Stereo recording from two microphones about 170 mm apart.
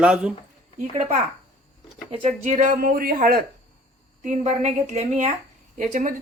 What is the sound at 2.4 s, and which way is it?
Speech, 45° right (ahead or behind).